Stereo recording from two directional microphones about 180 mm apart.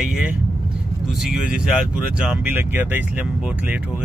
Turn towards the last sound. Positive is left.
turn(degrees=-10)  # may be behind; listen again after turning